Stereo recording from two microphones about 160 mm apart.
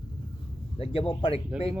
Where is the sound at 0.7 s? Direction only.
35° left (ahead or behind).